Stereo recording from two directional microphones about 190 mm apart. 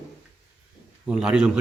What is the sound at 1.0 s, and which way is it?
Speech, 5° right (ahead or behind).